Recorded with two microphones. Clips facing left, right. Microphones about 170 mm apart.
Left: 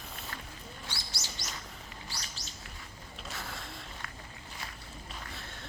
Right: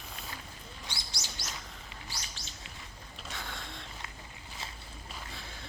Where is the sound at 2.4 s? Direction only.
40° left (ahead or behind).